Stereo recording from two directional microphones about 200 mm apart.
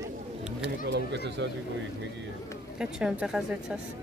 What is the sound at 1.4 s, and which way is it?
Speech, 65° right (ahead or behind).